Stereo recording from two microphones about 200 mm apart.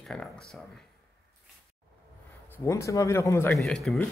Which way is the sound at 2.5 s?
15° left (ahead or behind).